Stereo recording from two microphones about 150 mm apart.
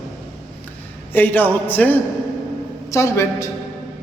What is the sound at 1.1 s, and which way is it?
A man's voice, 10° left (ahead or behind).